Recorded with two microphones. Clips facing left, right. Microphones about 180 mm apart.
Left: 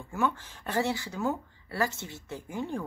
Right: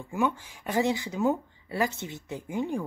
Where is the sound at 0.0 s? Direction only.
15° right (ahead or behind).